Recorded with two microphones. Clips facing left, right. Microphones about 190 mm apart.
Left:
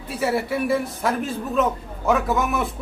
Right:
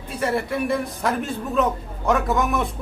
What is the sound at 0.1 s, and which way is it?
A man's voice, 5° left (ahead or behind).